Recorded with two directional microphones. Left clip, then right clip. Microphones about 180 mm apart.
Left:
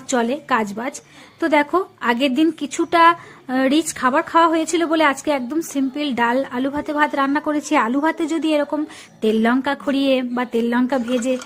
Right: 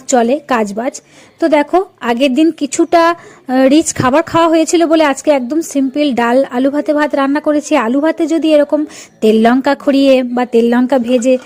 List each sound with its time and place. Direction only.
0.1 s a woman's voice: 30° right (ahead or behind)